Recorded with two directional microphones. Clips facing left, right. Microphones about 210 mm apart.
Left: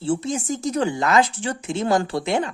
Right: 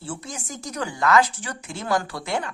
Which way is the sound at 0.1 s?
25° left (ahead or behind).